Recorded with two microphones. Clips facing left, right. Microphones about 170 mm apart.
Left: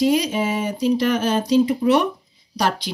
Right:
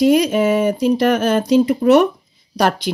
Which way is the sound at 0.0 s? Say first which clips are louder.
Right 5 dB; 55° right (ahead or behind).